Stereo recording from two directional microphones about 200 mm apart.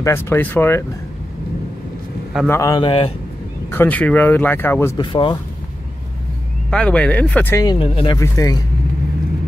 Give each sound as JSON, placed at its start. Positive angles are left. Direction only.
{"t": 0.0, "sound": "speech", "side_deg": 10}
{"t": 2.4, "sound": "speech", "side_deg": 15}
{"t": 3.7, "sound": "speech", "side_deg": 10}
{"t": 4.9, "sound": "speech", "side_deg": 25}
{"t": 6.7, "sound": "speech", "side_deg": 5}
{"t": 7.8, "sound": "speech", "side_deg": 25}
{"t": 8.2, "sound": "speech", "side_deg": 15}